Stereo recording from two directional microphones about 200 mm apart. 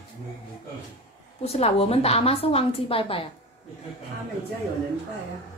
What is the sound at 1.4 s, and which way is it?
A woman's voice, 30° left (ahead or behind).